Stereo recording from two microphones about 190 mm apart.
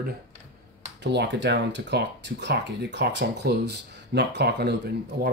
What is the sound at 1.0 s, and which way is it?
Speech, 65° right (ahead or behind).